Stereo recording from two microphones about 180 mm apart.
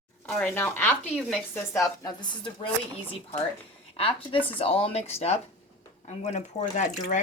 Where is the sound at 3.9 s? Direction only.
30° left (ahead or behind).